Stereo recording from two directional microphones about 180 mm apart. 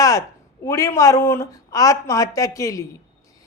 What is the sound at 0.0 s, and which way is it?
A woman's voice, 20° left (ahead or behind).